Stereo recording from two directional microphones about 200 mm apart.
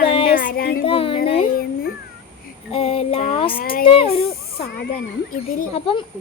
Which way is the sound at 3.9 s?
30° left (ahead or behind).